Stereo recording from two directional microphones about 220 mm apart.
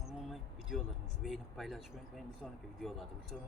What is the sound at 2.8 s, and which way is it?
Speech, centre (ahead or behind).